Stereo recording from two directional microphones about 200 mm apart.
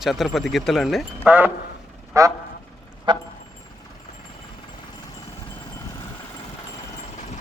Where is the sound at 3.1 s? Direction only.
25° right (ahead or behind).